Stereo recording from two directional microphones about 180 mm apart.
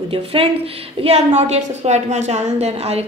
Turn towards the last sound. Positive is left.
turn(degrees=-35)  # may be behind; listen again after turning